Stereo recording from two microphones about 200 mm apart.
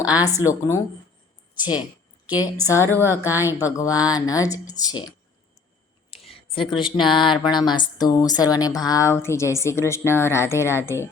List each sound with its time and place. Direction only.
0.0 s speech: 5° right (ahead or behind)
0.3 s speech: 15° left (ahead or behind)
2.4 s speech: 15° left (ahead or behind)
3.0 s a woman's voice: 10° right (ahead or behind)
3.6 s a woman's voice: 15° left (ahead or behind)
6.1 s a sound: 30° left (ahead or behind)
7.0 s a woman's voice: 25° left (ahead or behind)